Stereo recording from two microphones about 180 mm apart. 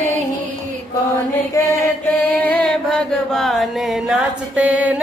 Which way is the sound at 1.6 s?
20° left (ahead or behind).